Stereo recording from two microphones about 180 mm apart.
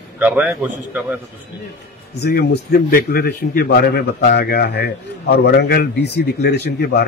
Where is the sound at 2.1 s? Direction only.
65° left (ahead or behind).